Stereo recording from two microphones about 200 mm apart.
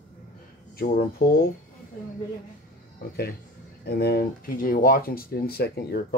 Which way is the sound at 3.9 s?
50° left (ahead or behind).